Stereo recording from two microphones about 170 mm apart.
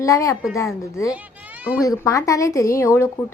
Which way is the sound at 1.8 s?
20° left (ahead or behind).